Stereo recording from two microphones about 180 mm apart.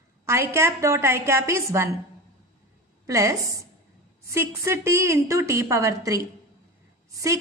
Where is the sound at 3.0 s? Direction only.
15° right (ahead or behind).